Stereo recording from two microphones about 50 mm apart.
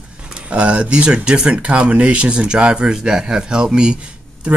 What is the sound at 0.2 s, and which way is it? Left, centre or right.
Speech, right.